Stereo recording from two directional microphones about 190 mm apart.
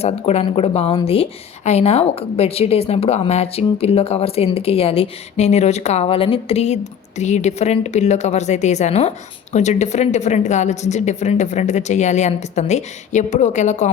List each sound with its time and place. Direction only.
0.0 s a woman's voice: 35° left (ahead or behind)